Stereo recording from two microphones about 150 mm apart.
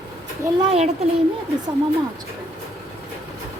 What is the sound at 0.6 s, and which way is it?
Speech, 40° right (ahead or behind).